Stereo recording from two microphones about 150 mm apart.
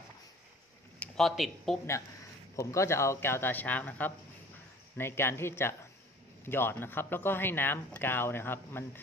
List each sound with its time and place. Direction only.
0.9 s speech: 5° left (ahead or behind)
2.5 s speech: 20° left (ahead or behind)